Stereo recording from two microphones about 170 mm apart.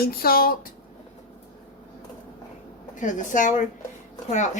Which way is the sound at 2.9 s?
50° left (ahead or behind).